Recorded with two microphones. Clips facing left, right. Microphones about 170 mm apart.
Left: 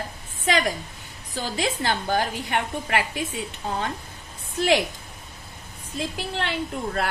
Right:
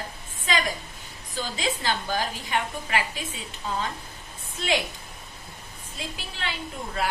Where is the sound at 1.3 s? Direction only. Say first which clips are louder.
Left 3 dB; 60° left (ahead or behind).